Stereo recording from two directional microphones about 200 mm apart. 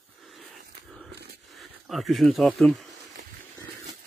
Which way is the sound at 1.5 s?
Centre (ahead or behind).